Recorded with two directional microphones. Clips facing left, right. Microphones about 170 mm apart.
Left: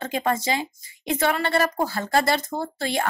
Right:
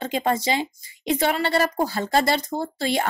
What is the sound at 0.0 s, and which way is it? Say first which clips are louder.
Speech: right 1 dB; 20° right (ahead or behind).